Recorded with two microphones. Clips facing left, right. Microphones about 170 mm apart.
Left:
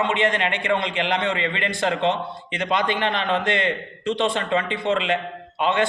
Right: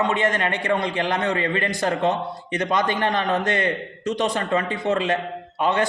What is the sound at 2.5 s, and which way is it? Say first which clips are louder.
Speech: right 1 dB; 45° right (ahead or behind).